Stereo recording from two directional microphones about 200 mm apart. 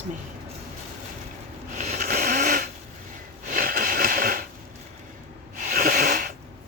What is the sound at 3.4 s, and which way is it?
Sniff, 45° right (ahead or behind).